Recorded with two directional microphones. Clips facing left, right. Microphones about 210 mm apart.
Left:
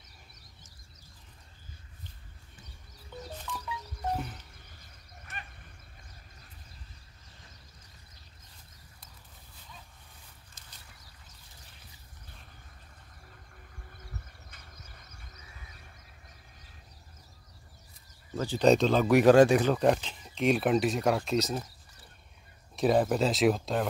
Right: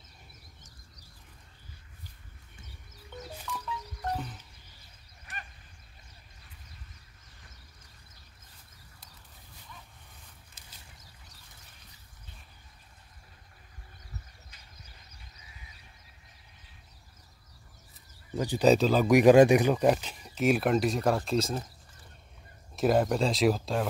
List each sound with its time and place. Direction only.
3.4 s music: 10° left (ahead or behind)
14.5 s vehicle: 55° left (ahead or behind)
18.3 s speech: 15° right (ahead or behind)
18.7 s speech: 5° right (ahead or behind)
22.8 s speech: centre (ahead or behind)